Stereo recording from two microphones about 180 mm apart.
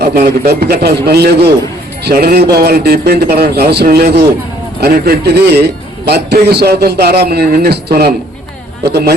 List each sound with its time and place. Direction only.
0.0 s a man's voice: 60° right (ahead or behind)